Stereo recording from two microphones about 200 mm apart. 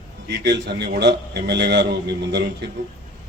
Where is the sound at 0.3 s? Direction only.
60° right (ahead or behind).